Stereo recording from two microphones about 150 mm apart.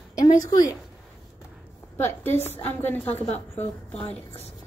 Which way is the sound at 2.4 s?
15° left (ahead or behind).